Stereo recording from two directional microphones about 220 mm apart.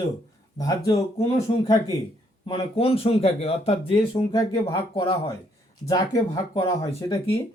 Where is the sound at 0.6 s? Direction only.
15° left (ahead or behind).